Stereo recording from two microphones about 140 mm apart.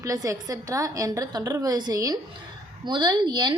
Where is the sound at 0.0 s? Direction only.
25° right (ahead or behind).